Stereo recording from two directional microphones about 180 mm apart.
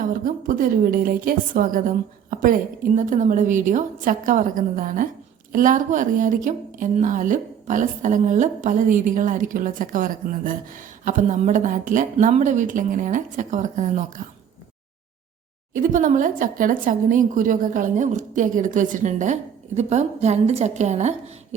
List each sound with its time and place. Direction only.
0.0 s a woman's voice: 50° right (ahead or behind)
15.7 s a woman's voice: 50° right (ahead or behind)